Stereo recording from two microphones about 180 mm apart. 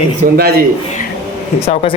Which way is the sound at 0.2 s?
45° right (ahead or behind).